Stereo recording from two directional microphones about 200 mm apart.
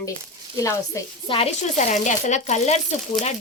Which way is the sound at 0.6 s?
15° left (ahead or behind).